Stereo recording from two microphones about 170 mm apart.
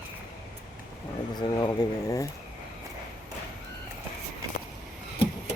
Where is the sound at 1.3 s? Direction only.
25° left (ahead or behind).